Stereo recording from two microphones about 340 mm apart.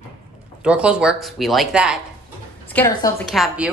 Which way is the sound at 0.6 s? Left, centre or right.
Centre.